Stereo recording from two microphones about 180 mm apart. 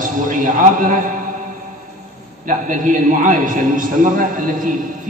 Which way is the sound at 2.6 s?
50° right (ahead or behind).